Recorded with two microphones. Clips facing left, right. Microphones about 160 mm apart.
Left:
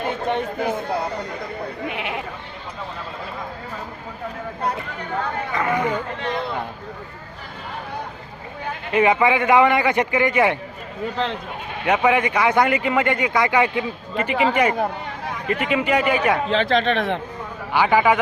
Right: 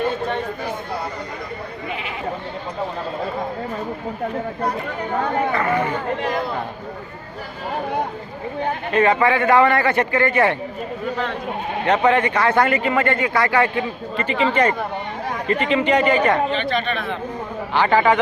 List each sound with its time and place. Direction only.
0.3 s speech: 20° left (ahead or behind)
5.5 s speech: 15° left (ahead or behind)
8.9 s speech: 15° left (ahead or behind)
11.9 s speech: 10° left (ahead or behind)
16.5 s speech: 90° left
17.7 s speech: 10° left (ahead or behind)